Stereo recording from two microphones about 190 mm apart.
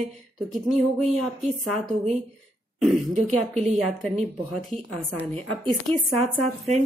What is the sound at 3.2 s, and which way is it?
Speech, 35° right (ahead or behind).